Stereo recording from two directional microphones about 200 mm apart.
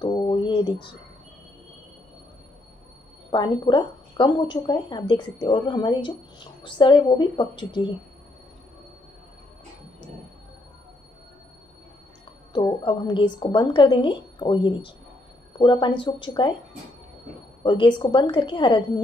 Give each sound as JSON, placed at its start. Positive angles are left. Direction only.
{"t": 0.0, "sound": "speech", "side_deg": 25}
{"t": 3.3, "sound": "a woman's voice", "side_deg": 25}
{"t": 12.5, "sound": "a woman's voice", "side_deg": 25}
{"t": 17.6, "sound": "a woman's voice", "side_deg": 25}